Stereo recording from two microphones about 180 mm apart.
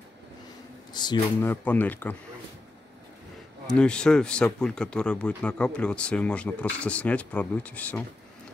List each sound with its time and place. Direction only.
0.9 s speech: 25° left (ahead or behind)
1.4 s speech: 10° left (ahead or behind)
3.6 s speech: 5° left (ahead or behind)